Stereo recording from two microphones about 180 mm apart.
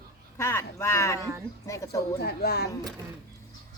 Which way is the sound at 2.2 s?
65° left (ahead or behind).